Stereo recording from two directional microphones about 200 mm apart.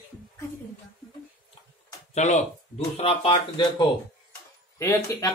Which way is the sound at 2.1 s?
35° left (ahead or behind).